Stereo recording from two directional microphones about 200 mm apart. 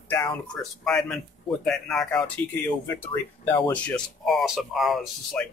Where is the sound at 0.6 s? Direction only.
Centre (ahead or behind).